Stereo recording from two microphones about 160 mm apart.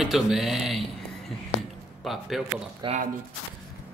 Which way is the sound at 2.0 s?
Centre (ahead or behind).